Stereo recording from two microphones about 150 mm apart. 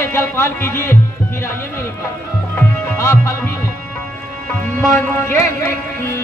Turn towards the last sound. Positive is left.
turn(degrees=15)  # may be behind; listen again after turning